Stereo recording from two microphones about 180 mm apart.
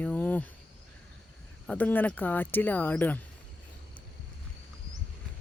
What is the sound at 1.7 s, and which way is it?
Speech, 10° left (ahead or behind).